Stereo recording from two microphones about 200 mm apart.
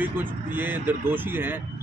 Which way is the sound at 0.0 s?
10° right (ahead or behind).